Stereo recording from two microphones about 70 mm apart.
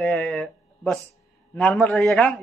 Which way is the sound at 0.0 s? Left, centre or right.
Centre.